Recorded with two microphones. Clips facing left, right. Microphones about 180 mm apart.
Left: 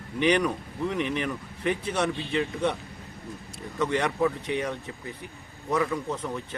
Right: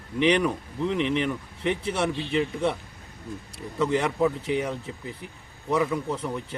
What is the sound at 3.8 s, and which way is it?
Speech, 5° right (ahead or behind).